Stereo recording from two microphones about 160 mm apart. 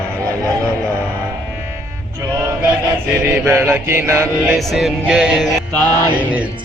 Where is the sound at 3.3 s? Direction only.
15° right (ahead or behind).